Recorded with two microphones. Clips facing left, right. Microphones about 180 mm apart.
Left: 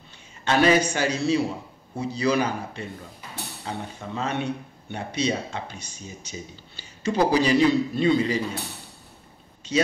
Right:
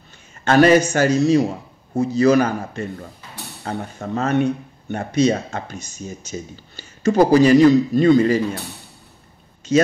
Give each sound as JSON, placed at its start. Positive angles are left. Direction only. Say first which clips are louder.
{"t": 0.5, "sound": "speech", "louder": "right 6 dB", "side_deg": -50}